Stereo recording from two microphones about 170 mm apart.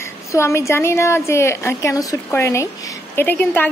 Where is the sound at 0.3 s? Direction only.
15° left (ahead or behind).